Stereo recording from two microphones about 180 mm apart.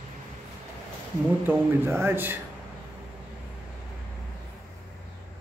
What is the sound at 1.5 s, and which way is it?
Speech, 15° right (ahead or behind).